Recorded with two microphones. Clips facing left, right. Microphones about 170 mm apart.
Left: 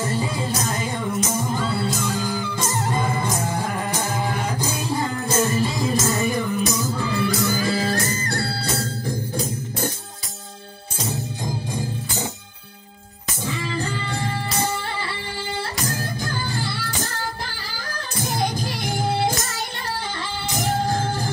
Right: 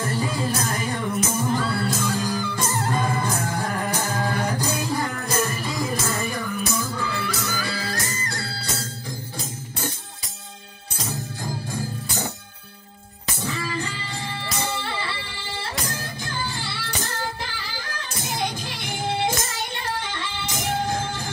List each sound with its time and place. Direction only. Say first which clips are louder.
0.0 s music: left 1 dB; 25° left (ahead or behind)
7.9 s music: left 6 dB; 40° left (ahead or behind)
8.3 s music: left 6 dB; 55° left (ahead or behind)
13.7 s music: left 3 dB; 35° left (ahead or behind)
16.6 s music: left 3 dB; 40° left (ahead or behind)
18.2 s music: left 4 dB; 40° left (ahead or behind)
20.5 s music: left 3 dB; 40° left (ahead or behind)